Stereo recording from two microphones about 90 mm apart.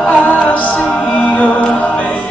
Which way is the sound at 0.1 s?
15° left (ahead or behind).